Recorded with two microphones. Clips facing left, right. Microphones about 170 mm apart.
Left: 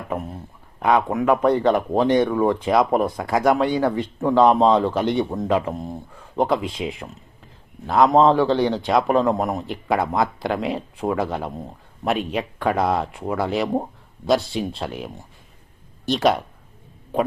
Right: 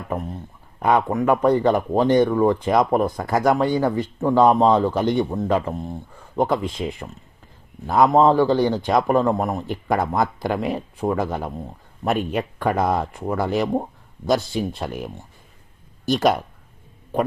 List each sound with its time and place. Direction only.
0.1 s speech: 10° left (ahead or behind)
6.1 s speech: centre (ahead or behind)
16.0 s speech: 5° right (ahead or behind)